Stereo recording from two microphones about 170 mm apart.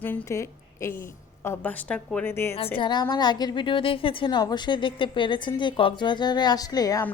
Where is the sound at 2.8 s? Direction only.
25° left (ahead or behind).